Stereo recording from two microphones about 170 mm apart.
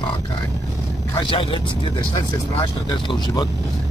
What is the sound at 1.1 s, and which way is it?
Speech, 30° left (ahead or behind).